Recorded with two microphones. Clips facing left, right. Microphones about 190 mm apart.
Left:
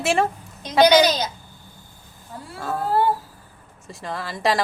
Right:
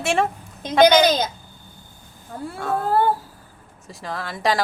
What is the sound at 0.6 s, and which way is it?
Speech, 50° right (ahead or behind).